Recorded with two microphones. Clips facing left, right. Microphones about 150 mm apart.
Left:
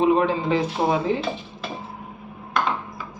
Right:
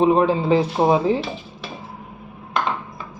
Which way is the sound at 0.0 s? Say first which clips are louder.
Right 3 dB; 35° right (ahead or behind).